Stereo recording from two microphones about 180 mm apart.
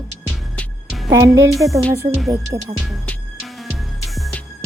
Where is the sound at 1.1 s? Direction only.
15° right (ahead or behind).